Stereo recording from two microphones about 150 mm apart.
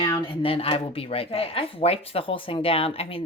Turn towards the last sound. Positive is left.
turn(degrees=40)  # may be behind; listen again after turning